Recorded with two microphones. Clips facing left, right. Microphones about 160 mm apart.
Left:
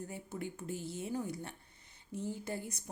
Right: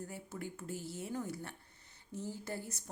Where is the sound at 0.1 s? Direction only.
20° left (ahead or behind).